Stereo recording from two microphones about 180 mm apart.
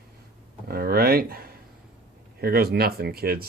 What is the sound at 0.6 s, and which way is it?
Speech, 60° right (ahead or behind).